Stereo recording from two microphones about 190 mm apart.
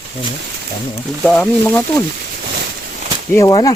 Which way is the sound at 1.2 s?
5° left (ahead or behind).